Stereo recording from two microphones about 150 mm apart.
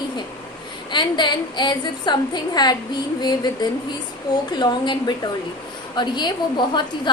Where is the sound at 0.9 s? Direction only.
30° left (ahead or behind).